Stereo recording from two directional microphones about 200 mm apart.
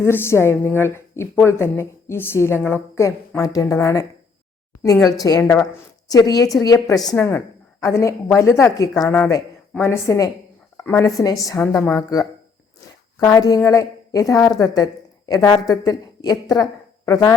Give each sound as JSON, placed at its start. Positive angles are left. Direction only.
{"t": 0.0, "sound": "a woman's voice", "side_deg": 15}
{"t": 5.2, "sound": "a woman's voice", "side_deg": 15}
{"t": 13.2, "sound": "a woman's voice", "side_deg": 15}